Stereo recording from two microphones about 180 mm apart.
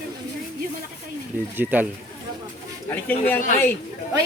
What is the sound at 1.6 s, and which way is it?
Speech, 10° right (ahead or behind).